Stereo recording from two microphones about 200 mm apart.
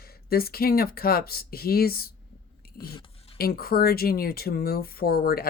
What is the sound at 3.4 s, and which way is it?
Speech, 50° left (ahead or behind).